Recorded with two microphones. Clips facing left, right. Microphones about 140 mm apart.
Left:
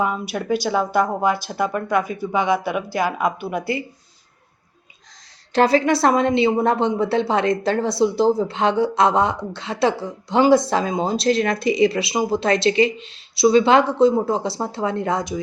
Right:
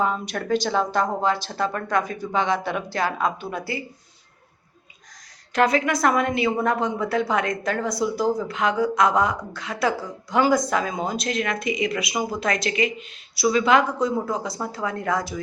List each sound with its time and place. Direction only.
0.0 s speech: 10° left (ahead or behind)
5.5 s a woman's voice: 30° left (ahead or behind)